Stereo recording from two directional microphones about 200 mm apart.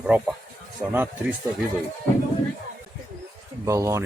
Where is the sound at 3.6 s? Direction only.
15° right (ahead or behind).